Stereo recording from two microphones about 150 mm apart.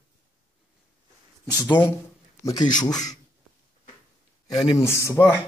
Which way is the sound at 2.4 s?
25° left (ahead or behind).